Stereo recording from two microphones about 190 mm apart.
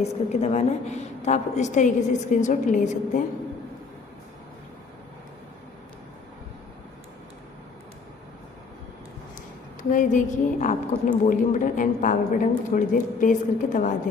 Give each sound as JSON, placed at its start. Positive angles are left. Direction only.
{"t": 0.0, "sound": "a woman's voice", "side_deg": 35}
{"t": 9.8, "sound": "a woman's voice", "side_deg": 40}